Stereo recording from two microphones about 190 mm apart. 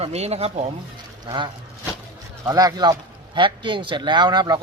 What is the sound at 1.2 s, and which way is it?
Speech, 25° right (ahead or behind).